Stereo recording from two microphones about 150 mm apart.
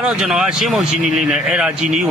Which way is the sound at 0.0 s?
5° right (ahead or behind).